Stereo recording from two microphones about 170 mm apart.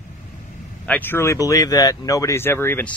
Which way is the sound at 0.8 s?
10° left (ahead or behind).